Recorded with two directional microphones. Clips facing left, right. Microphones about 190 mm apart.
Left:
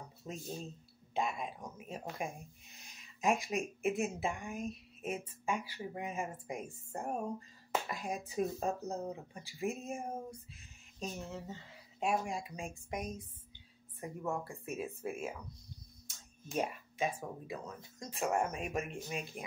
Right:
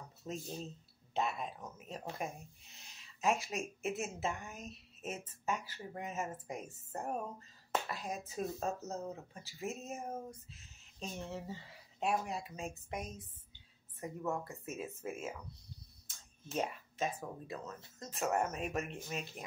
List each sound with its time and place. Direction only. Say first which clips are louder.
1.1 s speech: even; 10° left (ahead or behind)
11.0 s speech: left 1 dB; centre (ahead or behind)
12.0 s speech: left 1 dB; 10° left (ahead or behind)
14.4 s speech: left 3 dB; 15° left (ahead or behind)
16.4 s speech: left 1 dB; 10° left (ahead or behind)